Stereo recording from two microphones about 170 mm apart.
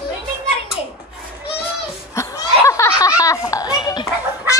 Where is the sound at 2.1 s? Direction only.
15° left (ahead or behind).